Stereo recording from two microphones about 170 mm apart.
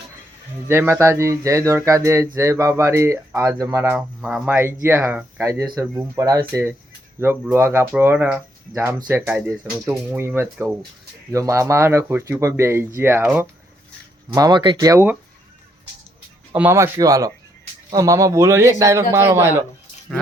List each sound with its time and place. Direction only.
0.7 s speech: 15° right (ahead or behind)
3.8 s speech: 5° right (ahead or behind)
14.3 s speech: 25° right (ahead or behind)
16.5 s speech: 15° right (ahead or behind)